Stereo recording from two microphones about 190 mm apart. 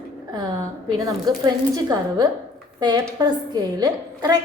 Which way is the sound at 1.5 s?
20° right (ahead or behind).